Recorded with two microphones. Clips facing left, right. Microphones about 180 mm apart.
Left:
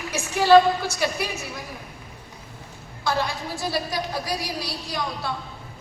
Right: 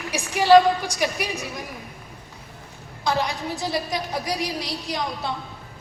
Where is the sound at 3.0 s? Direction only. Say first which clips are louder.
Right 1 dB; 20° right (ahead or behind).